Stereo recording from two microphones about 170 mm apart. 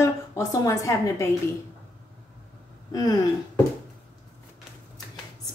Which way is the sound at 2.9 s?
20° left (ahead or behind).